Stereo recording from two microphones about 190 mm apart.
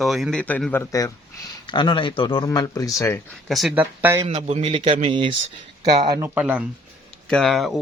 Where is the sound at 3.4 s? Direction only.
Centre (ahead or behind).